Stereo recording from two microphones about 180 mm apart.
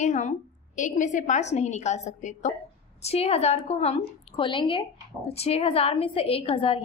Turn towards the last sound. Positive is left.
turn(degrees=30)  # may be behind; listen again after turning